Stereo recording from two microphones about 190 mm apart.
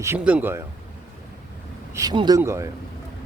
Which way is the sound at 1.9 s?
20° right (ahead or behind).